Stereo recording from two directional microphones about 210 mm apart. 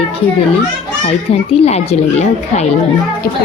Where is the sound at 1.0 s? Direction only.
30° left (ahead or behind).